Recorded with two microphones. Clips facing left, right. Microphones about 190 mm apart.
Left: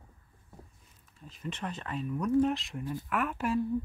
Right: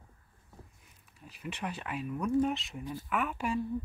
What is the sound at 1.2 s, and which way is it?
Speech, 10° right (ahead or behind).